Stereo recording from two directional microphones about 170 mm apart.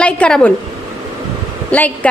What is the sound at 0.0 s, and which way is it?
Speech, 5° left (ahead or behind).